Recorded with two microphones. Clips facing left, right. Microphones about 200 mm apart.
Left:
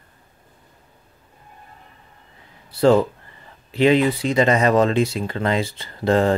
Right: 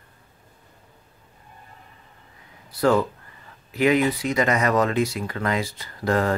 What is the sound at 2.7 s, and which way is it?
Speech, 25° left (ahead or behind).